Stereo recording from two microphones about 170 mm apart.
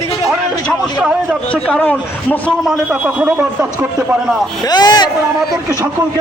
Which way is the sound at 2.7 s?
5° right (ahead or behind).